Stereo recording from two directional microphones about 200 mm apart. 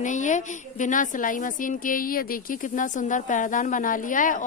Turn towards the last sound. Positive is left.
turn(degrees=40)  # may be behind; listen again after turning